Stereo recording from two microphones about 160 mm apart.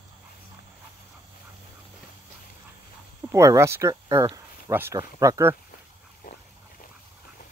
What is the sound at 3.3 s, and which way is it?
Speech, 20° right (ahead or behind).